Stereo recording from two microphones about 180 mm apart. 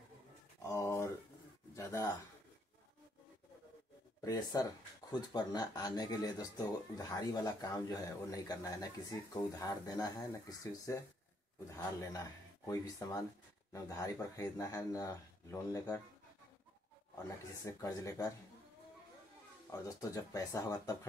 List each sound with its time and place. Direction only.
0.6 s a sound: 15° left (ahead or behind)
1.8 s speech: 15° left (ahead or behind)
4.2 s speech: 20° left (ahead or behind)
17.6 s speech: 15° left (ahead or behind)
19.7 s speech: 20° left (ahead or behind)